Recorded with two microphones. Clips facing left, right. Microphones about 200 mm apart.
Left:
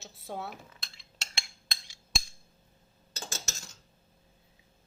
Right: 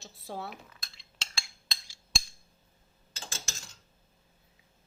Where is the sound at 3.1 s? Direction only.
40° left (ahead or behind).